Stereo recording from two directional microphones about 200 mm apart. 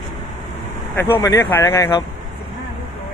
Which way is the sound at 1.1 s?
15° left (ahead or behind).